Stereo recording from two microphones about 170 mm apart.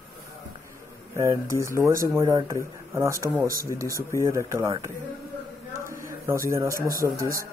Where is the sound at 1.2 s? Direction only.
20° right (ahead or behind).